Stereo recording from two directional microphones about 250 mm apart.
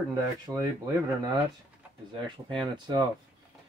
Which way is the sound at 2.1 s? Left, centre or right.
Centre.